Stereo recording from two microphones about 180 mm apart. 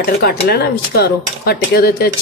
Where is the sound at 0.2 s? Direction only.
60° left (ahead or behind).